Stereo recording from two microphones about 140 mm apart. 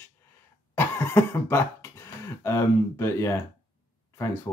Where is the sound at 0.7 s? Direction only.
15° left (ahead or behind).